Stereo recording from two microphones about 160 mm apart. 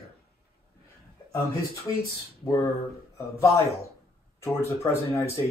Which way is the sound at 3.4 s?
20° left (ahead or behind).